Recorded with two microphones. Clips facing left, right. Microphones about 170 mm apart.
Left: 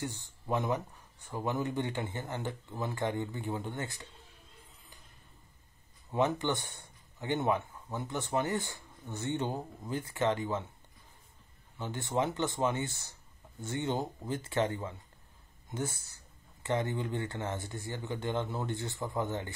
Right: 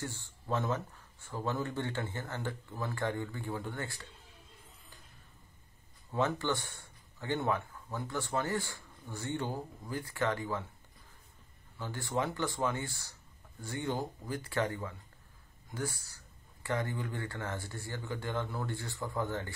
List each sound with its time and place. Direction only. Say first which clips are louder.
0.0 s speech: left 2 dB; 15° left (ahead or behind)
6.1 s speech: left 2 dB; 20° left (ahead or behind)
11.8 s speech: left 2 dB; 20° left (ahead or behind)